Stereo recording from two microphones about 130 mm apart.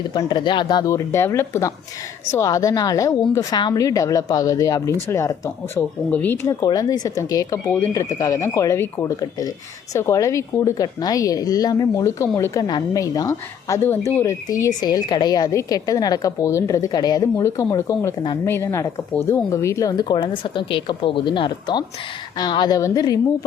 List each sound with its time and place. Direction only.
0.1 s speech: 35° left (ahead or behind)
0.9 s a woman's voice: 20° left (ahead or behind)
6.5 s a woman's voice: 30° left (ahead or behind)